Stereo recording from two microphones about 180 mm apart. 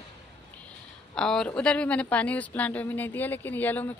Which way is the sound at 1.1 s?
5° left (ahead or behind).